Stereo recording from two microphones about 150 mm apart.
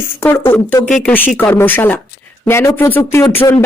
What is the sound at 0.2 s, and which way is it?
A man's voice, 15° left (ahead or behind).